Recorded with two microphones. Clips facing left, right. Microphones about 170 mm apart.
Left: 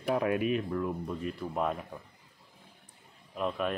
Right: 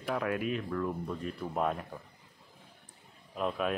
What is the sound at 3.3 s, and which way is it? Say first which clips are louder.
Speech: even; centre (ahead or behind).